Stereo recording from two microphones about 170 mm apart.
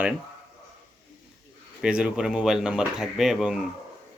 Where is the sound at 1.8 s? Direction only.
5° right (ahead or behind).